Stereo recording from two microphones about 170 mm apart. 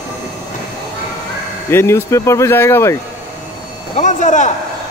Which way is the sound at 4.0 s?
45° left (ahead or behind).